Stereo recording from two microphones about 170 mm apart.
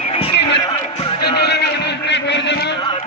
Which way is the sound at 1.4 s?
75° left (ahead or behind).